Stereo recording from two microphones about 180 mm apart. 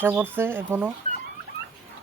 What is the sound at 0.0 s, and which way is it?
Speech, 10° right (ahead or behind).